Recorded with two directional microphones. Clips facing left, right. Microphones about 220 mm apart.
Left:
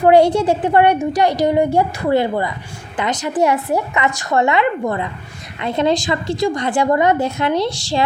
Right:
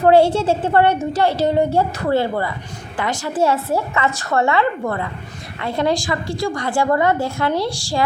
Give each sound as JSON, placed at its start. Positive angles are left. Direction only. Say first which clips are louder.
{"t": 0.0, "sound": "a woman's voice", "louder": "left 1 dB", "side_deg": 15}